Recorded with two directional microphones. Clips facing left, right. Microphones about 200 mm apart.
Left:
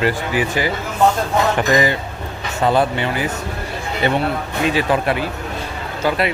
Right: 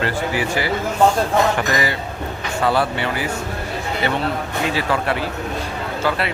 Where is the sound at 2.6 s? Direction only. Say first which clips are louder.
Left 3 dB; 20° left (ahead or behind).